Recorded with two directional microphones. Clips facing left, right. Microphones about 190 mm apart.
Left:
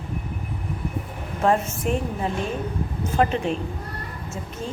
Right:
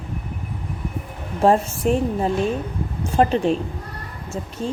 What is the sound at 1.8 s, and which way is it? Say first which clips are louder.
Speech: right 5 dB; 35° right (ahead or behind).